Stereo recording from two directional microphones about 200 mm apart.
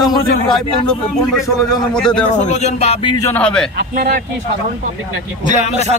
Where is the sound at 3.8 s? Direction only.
45° right (ahead or behind).